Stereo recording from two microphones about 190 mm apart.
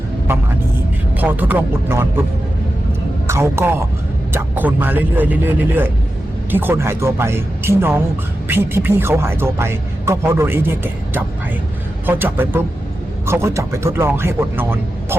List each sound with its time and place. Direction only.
0.3 s speech: 10° right (ahead or behind)
3.2 s a man's voice: 15° right (ahead or behind)